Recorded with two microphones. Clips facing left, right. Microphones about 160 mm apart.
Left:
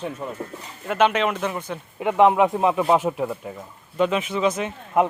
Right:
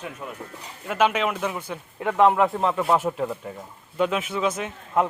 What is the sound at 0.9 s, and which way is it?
Speech, 5° right (ahead or behind).